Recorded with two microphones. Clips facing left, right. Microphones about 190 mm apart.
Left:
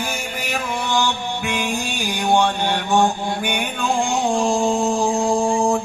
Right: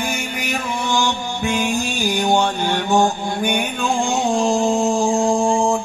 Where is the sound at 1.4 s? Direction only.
30° right (ahead or behind).